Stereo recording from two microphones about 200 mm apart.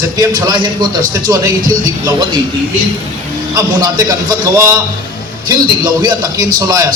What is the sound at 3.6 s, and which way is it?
A man's voice, 20° right (ahead or behind).